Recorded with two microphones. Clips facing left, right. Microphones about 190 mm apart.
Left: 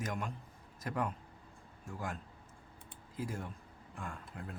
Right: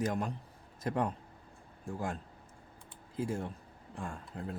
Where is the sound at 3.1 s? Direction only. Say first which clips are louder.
Right 5 dB; 25° right (ahead or behind).